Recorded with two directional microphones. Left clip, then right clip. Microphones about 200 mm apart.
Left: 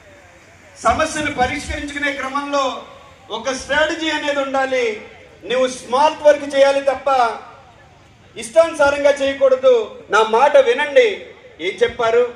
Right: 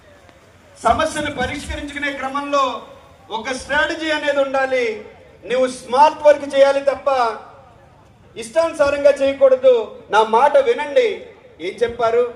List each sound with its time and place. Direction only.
0.8 s a man's voice: 45° left (ahead or behind)
8.4 s a man's voice: 45° left (ahead or behind)
10.8 s a man's voice: 30° left (ahead or behind)